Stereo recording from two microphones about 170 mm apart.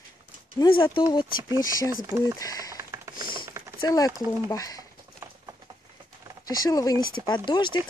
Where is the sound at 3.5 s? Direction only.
15° right (ahead or behind).